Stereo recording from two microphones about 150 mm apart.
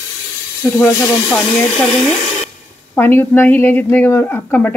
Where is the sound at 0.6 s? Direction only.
15° left (ahead or behind).